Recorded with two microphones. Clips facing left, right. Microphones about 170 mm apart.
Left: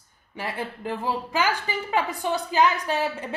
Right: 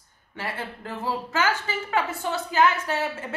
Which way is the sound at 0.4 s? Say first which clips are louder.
Left 2 dB; 15° left (ahead or behind).